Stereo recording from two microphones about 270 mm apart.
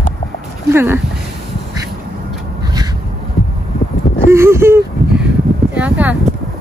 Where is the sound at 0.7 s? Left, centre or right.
Centre.